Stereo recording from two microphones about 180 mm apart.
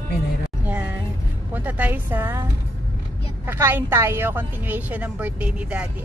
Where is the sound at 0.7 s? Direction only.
10° right (ahead or behind).